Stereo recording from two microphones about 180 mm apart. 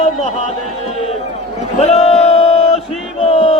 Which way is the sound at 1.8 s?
35° left (ahead or behind).